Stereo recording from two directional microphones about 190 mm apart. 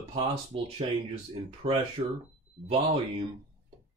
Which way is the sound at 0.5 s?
30° right (ahead or behind).